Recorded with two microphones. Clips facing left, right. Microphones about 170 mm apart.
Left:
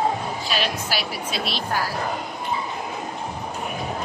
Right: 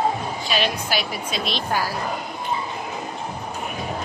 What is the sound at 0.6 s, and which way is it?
Speech, 5° left (ahead or behind).